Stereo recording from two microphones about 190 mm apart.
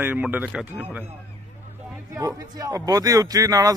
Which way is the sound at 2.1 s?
20° right (ahead or behind).